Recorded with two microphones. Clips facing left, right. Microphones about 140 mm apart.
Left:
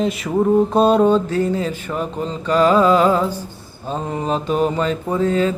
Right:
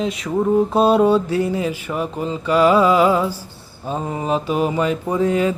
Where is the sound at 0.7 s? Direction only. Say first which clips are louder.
Right 1 dB; 5° right (ahead or behind).